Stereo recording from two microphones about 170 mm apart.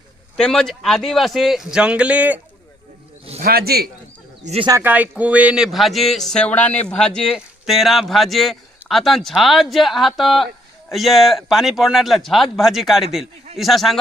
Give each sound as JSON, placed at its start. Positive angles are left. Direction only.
{"t": 0.3, "sound": "speech", "side_deg": 5}
{"t": 3.4, "sound": "a man's voice", "side_deg": -65}
{"t": 4.4, "sound": "speech", "side_deg": -35}
{"t": 4.7, "sound": "speech", "side_deg": -10}